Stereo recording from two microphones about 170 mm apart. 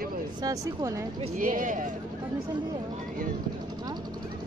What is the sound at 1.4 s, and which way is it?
Speech, 50° right (ahead or behind).